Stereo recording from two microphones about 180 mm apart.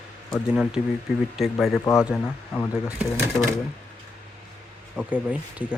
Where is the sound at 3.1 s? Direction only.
15° right (ahead or behind).